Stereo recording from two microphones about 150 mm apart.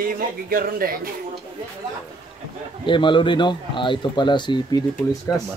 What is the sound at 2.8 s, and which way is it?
Speech, 35° left (ahead or behind).